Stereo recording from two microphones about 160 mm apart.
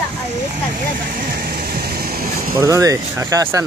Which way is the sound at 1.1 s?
65° right (ahead or behind).